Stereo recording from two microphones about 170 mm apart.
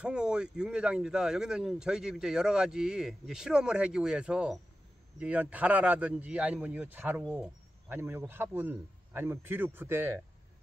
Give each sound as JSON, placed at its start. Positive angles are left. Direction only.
{"t": 0.0, "sound": "speech", "side_deg": -5}